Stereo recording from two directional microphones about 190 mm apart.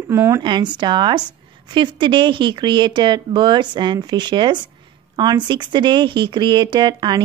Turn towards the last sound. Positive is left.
turn(degrees=-25)  # may be behind; listen again after turning